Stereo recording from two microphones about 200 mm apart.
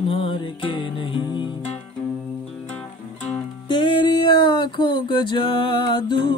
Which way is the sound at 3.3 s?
25° left (ahead or behind).